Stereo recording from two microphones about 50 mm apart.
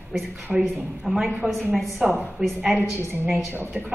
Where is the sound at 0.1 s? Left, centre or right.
Centre.